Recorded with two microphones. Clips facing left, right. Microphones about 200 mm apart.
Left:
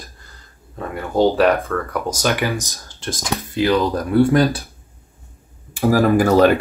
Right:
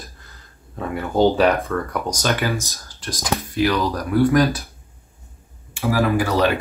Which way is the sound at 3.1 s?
30° left (ahead or behind).